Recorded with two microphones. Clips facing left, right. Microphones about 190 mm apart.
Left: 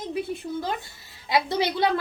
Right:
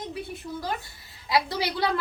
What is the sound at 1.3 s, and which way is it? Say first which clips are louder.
Speech: left 2 dB; 25° left (ahead or behind).